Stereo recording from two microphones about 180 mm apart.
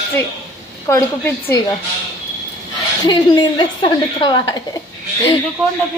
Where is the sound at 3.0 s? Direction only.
25° left (ahead or behind).